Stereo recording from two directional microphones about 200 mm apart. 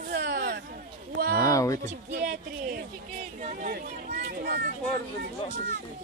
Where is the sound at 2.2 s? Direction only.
40° right (ahead or behind); by 4.7 s 55° right (ahead or behind).